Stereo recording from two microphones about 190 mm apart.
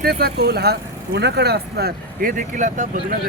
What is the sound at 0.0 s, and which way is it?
Speech, 55° right (ahead or behind).